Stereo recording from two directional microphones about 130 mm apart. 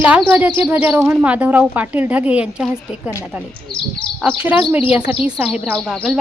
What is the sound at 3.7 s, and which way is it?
Speech, 40° left (ahead or behind).